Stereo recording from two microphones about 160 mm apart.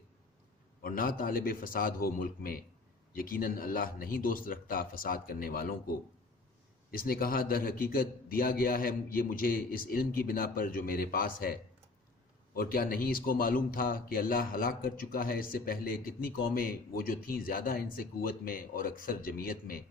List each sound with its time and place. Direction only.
0.8 s a man's voice: 65° left (ahead or behind)
6.9 s a man's voice: 65° left (ahead or behind)
12.5 s a man's voice: 65° left (ahead or behind)